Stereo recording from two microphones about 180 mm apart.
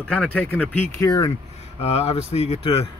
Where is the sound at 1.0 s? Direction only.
25° left (ahead or behind).